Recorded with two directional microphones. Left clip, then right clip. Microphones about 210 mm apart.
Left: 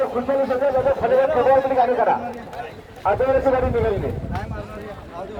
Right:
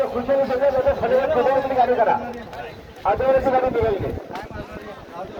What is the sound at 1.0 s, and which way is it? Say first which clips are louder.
Speech: left 4 dB; 40° right (ahead or behind).